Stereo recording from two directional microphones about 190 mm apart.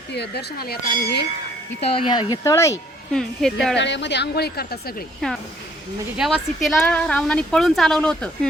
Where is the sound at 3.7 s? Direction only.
65° left (ahead or behind).